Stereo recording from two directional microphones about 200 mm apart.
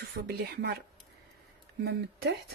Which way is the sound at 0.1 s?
60° right (ahead or behind).